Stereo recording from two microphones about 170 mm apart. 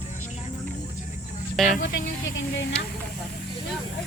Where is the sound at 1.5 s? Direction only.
Centre (ahead or behind).